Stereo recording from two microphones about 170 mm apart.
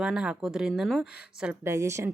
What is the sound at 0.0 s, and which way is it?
Speech, 5° right (ahead or behind).